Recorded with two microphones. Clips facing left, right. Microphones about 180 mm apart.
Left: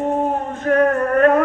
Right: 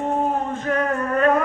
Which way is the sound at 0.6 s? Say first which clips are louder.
Left 6 dB; 50° left (ahead or behind).